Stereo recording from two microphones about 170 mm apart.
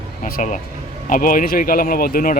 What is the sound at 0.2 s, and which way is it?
Speech, 55° left (ahead or behind).